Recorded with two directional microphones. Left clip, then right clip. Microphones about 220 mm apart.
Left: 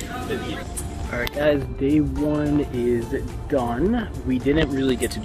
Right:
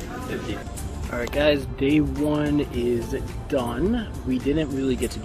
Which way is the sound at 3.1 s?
5° right (ahead or behind).